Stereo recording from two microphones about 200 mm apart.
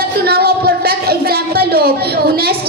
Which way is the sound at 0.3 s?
50° right (ahead or behind).